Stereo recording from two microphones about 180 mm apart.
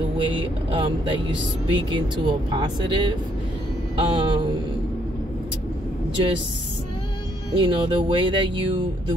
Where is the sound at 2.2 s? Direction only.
25° right (ahead or behind).